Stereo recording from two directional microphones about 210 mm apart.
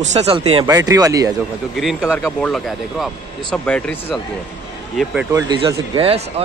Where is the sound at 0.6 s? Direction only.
15° right (ahead or behind).